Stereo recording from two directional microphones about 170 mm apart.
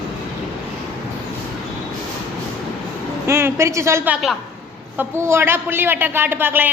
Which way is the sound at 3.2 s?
15° right (ahead or behind).